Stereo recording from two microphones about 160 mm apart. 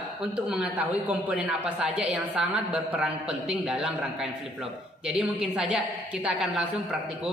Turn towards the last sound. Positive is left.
turn(degrees=-5)  # may be behind; listen again after turning